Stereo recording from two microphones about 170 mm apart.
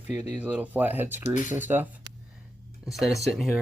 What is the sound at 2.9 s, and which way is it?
Speech, centre (ahead or behind).